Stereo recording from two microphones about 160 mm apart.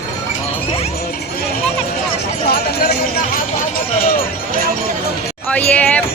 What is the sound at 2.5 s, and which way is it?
Run, 75° left (ahead or behind).